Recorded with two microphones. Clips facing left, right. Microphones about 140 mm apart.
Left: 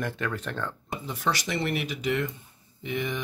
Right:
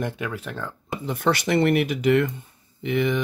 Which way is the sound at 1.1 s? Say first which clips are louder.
Right 8 dB; 60° right (ahead or behind).